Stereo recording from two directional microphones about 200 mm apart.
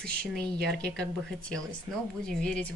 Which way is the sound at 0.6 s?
5° left (ahead or behind).